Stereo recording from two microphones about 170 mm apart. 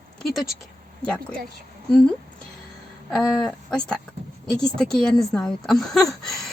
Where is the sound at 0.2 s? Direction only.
Centre (ahead or behind).